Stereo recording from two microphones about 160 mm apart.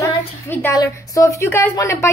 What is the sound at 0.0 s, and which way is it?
A woman's voice, 15° left (ahead or behind).